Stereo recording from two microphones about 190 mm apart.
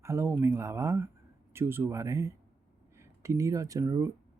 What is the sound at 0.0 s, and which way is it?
Speech, 15° right (ahead or behind).